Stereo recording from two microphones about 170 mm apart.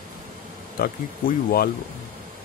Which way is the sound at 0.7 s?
60° left (ahead or behind).